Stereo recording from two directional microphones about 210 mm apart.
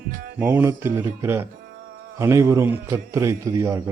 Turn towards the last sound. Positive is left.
turn(degrees=-15)  # may be behind; listen again after turning